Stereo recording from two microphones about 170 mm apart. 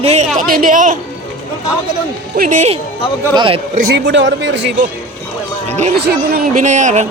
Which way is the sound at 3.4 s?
35° right (ahead or behind).